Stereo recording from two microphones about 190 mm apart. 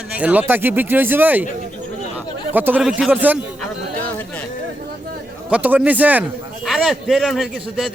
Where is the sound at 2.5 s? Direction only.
10° right (ahead or behind).